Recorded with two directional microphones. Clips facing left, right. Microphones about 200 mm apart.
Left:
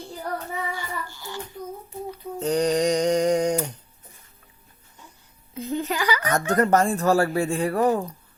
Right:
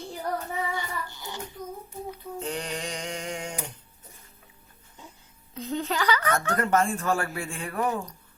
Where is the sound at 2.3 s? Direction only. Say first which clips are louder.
Left 13 dB; 40° left (ahead or behind).